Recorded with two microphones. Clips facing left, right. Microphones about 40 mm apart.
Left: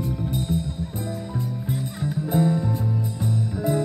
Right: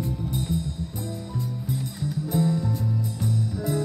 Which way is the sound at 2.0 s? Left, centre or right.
Left.